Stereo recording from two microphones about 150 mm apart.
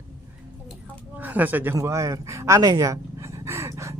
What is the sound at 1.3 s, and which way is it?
A man's voice, 10° right (ahead or behind).